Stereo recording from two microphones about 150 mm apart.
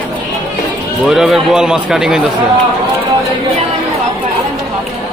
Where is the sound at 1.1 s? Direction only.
5° right (ahead or behind).